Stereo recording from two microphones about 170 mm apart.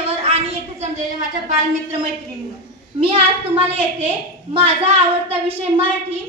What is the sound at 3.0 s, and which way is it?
A woman's voice, 35° right (ahead or behind).